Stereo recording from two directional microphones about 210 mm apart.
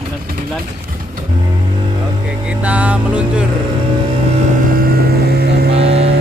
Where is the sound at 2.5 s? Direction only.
5° right (ahead or behind).